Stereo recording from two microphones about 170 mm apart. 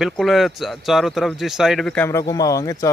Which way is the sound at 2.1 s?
20° left (ahead or behind).